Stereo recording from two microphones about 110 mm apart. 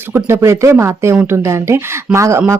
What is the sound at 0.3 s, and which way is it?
Speech, 25° right (ahead or behind).